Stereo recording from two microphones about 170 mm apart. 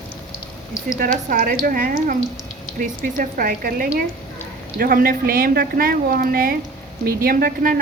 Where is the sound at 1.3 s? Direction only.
55° right (ahead or behind).